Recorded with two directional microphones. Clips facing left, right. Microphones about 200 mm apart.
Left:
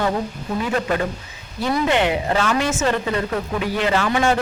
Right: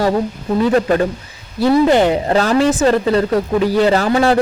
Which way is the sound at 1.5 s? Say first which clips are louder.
Right 8 dB; 35° right (ahead or behind).